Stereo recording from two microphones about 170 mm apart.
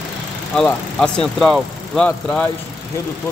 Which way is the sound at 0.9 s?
5° left (ahead or behind).